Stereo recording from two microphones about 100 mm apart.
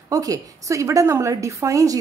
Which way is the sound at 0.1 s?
35° right (ahead or behind).